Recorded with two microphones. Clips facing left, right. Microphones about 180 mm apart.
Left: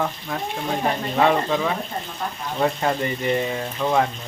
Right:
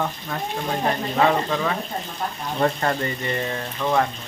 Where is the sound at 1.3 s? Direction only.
5° left (ahead or behind).